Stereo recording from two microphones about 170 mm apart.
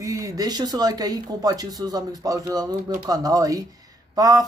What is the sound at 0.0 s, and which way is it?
Speech, 20° right (ahead or behind).